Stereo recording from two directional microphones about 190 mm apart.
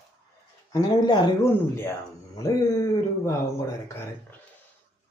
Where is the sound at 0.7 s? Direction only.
20° left (ahead or behind).